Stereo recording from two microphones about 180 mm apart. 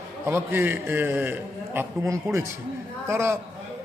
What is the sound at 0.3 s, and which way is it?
A man's voice, 15° right (ahead or behind).